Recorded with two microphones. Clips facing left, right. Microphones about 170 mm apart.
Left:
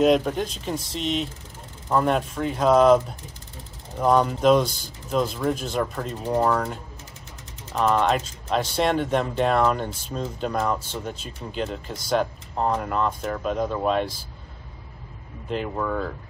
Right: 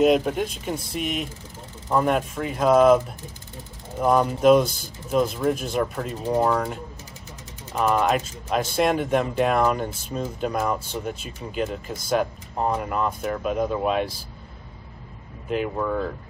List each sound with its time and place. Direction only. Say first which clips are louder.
0.0 s speech: even; 5° right (ahead or behind)
4.0 s speech: right 1 dB; 5° right (ahead or behind)
4.6 s speech: right 1 dB; 50° right (ahead or behind)
5.1 s speech: right 2 dB; 5° right (ahead or behind)
15.5 s speech: right 2 dB; 5° right (ahead or behind)